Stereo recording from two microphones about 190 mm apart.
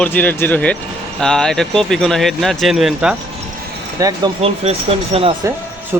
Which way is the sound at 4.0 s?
20° right (ahead or behind).